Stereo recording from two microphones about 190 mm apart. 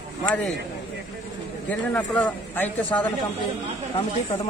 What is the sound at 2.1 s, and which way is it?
A man's voice, 10° left (ahead or behind).